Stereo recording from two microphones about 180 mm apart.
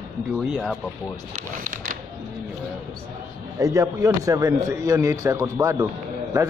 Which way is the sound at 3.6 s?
15° right (ahead or behind).